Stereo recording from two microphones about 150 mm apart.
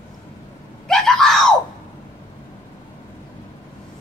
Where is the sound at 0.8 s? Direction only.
5° left (ahead or behind).